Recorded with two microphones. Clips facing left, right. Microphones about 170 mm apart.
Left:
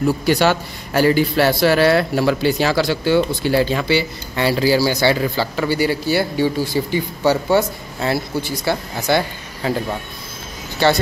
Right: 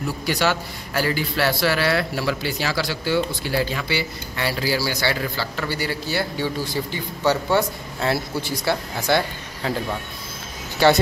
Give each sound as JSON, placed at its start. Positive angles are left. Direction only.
{"t": 0.4, "sound": "a man's voice", "side_deg": 25}
{"t": 1.5, "sound": "speech", "side_deg": 45}
{"t": 2.9, "sound": "speech", "side_deg": 25}
{"t": 10.8, "sound": "speech", "side_deg": -10}